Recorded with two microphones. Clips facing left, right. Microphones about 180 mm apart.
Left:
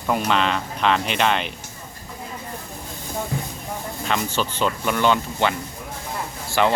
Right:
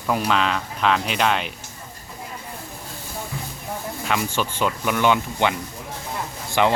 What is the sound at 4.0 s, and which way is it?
Speech, 5° right (ahead or behind).